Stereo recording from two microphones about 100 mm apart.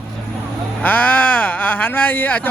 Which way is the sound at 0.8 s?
15° left (ahead or behind).